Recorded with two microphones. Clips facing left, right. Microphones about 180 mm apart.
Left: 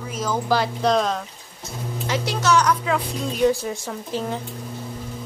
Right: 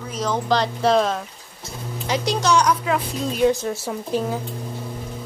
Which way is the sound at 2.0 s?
15° right (ahead or behind).